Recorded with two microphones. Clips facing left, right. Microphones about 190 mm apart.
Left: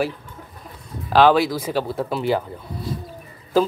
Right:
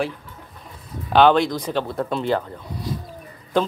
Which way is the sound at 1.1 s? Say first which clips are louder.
Even; 5° left (ahead or behind).